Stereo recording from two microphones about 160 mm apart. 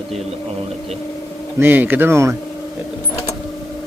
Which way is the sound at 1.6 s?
10° right (ahead or behind).